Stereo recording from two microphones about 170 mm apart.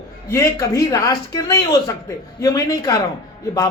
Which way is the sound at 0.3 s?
20° left (ahead or behind).